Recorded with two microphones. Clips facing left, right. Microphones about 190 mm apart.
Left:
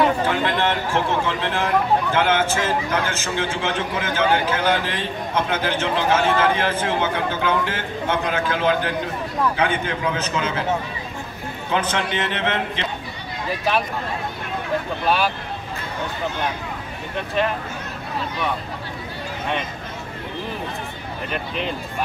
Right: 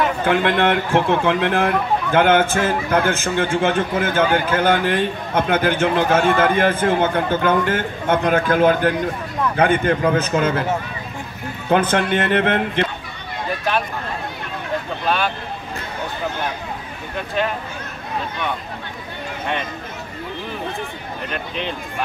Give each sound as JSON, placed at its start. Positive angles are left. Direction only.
{"t": 0.3, "sound": "a man's voice", "side_deg": -60}
{"t": 11.7, "sound": "a man's voice", "side_deg": -55}
{"t": 15.0, "sound": "speech", "side_deg": 5}
{"t": 17.4, "sound": "speech", "side_deg": 0}
{"t": 21.3, "sound": "speech", "side_deg": 5}